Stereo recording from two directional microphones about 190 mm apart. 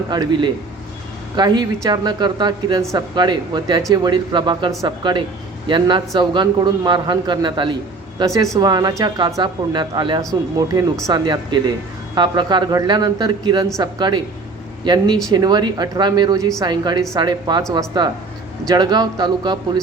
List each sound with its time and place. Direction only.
0.1 s a man's voice: 20° right (ahead or behind)